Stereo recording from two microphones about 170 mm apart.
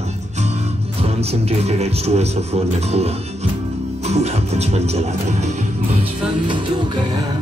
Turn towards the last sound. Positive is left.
turn(degrees=-40)  # may be behind; listen again after turning